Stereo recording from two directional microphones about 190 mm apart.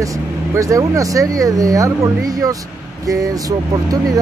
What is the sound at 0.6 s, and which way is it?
Speech, 15° right (ahead or behind).